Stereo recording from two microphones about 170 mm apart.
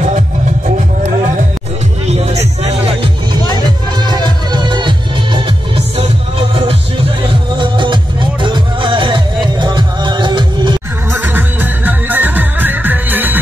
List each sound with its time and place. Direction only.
0.7 s music: 45° right (ahead or behind)
3.4 s music: 25° right (ahead or behind)
6.5 s music: 35° right (ahead or behind)
11.1 s music: 10° right (ahead or behind)